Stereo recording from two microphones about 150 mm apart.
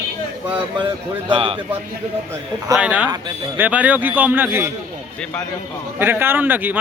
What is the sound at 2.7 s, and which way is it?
Speech, 10° right (ahead or behind).